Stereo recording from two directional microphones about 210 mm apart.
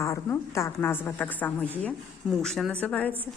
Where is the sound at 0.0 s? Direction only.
15° left (ahead or behind).